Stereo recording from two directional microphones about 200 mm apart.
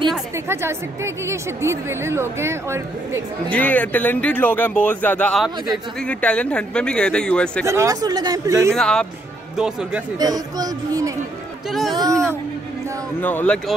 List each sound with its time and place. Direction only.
0.5 s a woman's voice: 10° right (ahead or behind)
3.4 s speech: 5° left (ahead or behind)
7.6 s a woman's voice: 15° right (ahead or behind)
8.7 s speech: 5° left (ahead or behind)
10.1 s speech: 20° right (ahead or behind)
13.2 s speech: 10° left (ahead or behind)